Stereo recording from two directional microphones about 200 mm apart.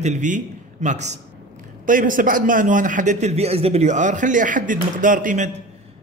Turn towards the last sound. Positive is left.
turn(degrees=-40)  # may be behind; listen again after turning